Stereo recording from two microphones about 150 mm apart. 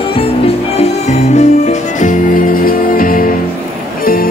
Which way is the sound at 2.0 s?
65° left (ahead or behind).